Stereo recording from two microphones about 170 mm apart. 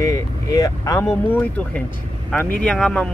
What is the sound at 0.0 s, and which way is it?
Speech, 20° left (ahead or behind).